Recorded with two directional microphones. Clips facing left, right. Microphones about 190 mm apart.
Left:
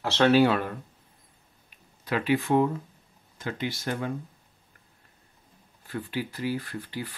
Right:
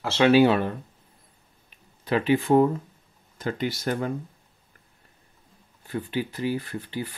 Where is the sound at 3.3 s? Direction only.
40° right (ahead or behind).